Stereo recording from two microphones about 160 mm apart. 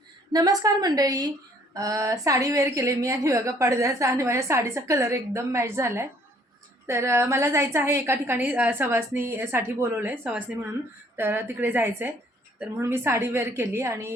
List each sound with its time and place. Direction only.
0.3 s a woman's voice: 20° right (ahead or behind)